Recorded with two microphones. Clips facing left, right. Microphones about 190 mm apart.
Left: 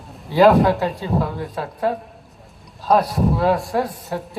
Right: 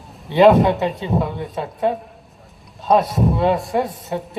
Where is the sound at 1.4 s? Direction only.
20° right (ahead or behind).